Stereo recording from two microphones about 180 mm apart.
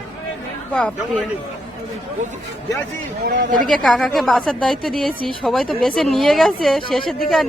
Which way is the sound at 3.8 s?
Centre (ahead or behind).